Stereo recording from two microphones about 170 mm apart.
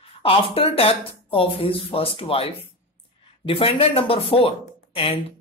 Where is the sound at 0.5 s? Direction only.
35° left (ahead or behind).